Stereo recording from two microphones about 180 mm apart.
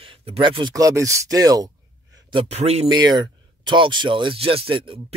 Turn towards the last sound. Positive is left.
turn(degrees=-30)  # may be behind; listen again after turning